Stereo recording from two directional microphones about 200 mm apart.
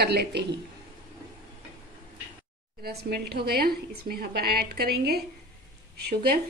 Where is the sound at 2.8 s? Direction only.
55° right (ahead or behind).